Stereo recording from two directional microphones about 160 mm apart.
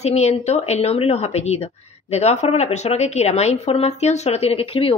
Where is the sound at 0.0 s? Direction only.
45° left (ahead or behind).